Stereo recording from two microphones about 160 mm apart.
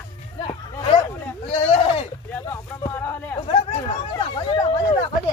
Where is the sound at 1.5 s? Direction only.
40° left (ahead or behind).